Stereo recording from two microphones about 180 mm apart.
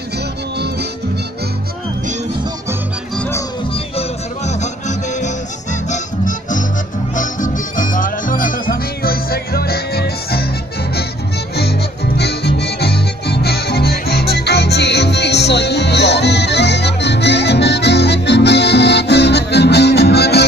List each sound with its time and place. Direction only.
3.2 s music: 15° left (ahead or behind)
3.7 s music: 35° left (ahead or behind); by 10.5 s 60° left (ahead or behind)
11.5 s music: 65° left (ahead or behind)